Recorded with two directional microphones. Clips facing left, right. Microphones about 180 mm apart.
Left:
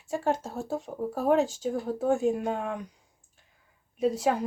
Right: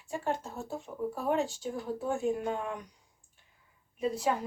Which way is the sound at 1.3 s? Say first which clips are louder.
Left 7 dB; 90° left.